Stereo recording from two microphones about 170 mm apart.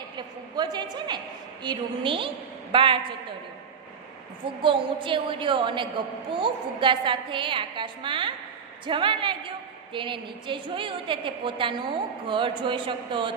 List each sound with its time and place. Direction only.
0.6 s a woman's voice: 25° right (ahead or behind)
4.6 s a woman's voice: 30° right (ahead or behind)